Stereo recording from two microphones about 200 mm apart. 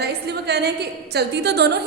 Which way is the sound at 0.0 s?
55° right (ahead or behind).